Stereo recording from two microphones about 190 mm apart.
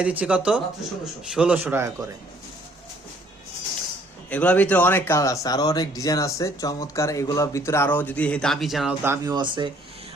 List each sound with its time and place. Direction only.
0.0 s speech: 5° right (ahead or behind)
4.3 s speech: 5° left (ahead or behind)
9.0 s speech: 20° right (ahead or behind)